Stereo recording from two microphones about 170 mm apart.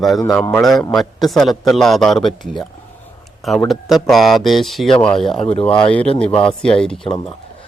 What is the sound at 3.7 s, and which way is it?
Speech, centre (ahead or behind).